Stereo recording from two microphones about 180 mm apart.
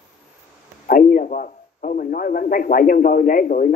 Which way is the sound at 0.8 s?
50° left (ahead or behind).